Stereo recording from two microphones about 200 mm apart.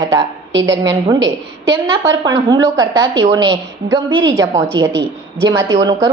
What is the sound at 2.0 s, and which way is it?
A woman's voice, 20° right (ahead or behind).